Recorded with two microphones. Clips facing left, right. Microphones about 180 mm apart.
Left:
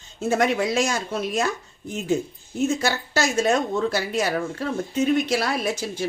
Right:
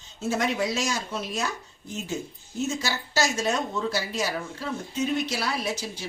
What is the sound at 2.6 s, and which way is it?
A woman's voice, 55° left (ahead or behind).